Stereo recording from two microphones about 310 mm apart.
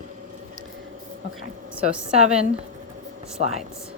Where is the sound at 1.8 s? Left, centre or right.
Right.